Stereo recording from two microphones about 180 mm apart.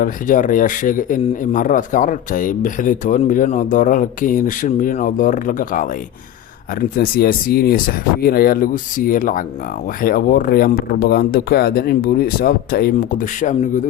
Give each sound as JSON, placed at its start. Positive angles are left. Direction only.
{"t": 0.0, "sound": "a man's voice", "side_deg": 45}